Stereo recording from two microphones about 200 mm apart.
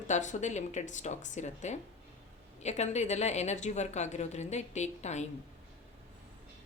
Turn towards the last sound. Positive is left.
turn(degrees=35)  # may be behind; listen again after turning